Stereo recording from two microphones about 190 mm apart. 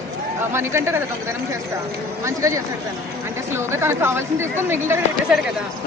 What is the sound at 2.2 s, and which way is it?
Speech, 15° right (ahead or behind).